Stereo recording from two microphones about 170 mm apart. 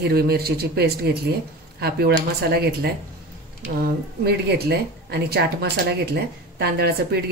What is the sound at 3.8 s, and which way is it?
Speech, 70° right (ahead or behind).